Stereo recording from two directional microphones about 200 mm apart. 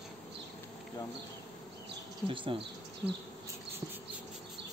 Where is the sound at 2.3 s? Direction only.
25° right (ahead or behind).